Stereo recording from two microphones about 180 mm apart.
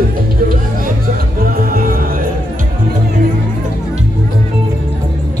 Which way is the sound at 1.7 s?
55° right (ahead or behind).